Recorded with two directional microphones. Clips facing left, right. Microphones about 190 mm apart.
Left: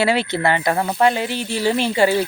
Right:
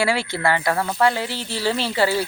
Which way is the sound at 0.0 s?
20° left (ahead or behind).